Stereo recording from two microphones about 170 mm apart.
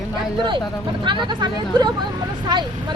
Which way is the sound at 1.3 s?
25° right (ahead or behind).